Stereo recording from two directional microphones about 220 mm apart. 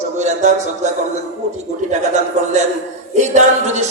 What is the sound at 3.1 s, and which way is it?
Speech, 30° right (ahead or behind).